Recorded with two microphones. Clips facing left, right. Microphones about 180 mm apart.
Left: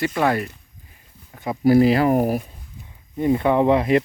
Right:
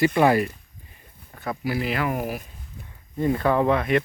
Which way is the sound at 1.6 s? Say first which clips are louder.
Left 12 dB; 40° left (ahead or behind).